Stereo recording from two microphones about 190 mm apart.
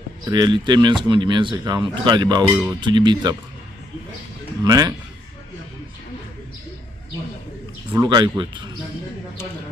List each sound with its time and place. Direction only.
0.3 s speech: 20° right (ahead or behind)
2.4 s speech: 10° right (ahead or behind)
2.8 s speech: 25° right (ahead or behind)
4.6 s speech: 20° right (ahead or behind)
7.9 s speech: 20° right (ahead or behind)